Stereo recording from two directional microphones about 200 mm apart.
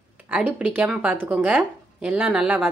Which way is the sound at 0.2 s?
10° right (ahead or behind).